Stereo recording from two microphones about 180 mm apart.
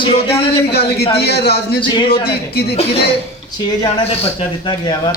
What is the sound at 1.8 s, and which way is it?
Speech, 25° left (ahead or behind).